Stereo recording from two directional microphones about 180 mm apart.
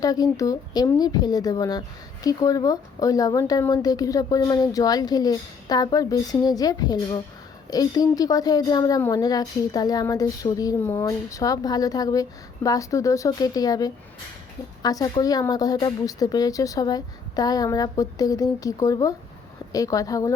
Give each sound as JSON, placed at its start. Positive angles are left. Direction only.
{"t": 0.0, "sound": "a woman's voice", "side_deg": 20}